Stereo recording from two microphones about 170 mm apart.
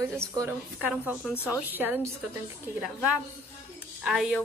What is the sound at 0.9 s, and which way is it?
A woman's voice, 5° right (ahead or behind).